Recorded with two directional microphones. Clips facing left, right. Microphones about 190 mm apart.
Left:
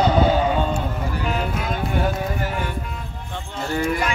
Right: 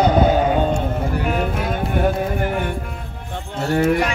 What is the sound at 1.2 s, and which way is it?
Music, 50° right (ahead or behind).